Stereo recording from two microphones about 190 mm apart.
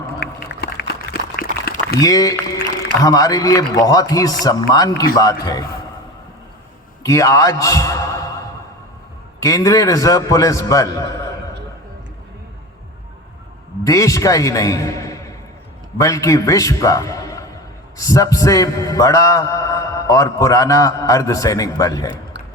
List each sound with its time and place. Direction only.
0.2 s a sound: 55° left (ahead or behind)
2.0 s a man's voice: 20° left (ahead or behind)
7.0 s a man's voice: 15° left (ahead or behind)
9.4 s a man's voice: 15° left (ahead or behind)
13.8 s a man's voice: 20° left (ahead or behind)